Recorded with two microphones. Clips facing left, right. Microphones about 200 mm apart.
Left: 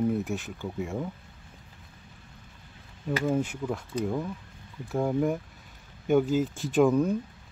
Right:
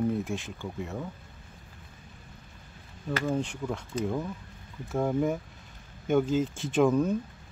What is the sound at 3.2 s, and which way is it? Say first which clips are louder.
Speech: left 3 dB; 5° left (ahead or behind).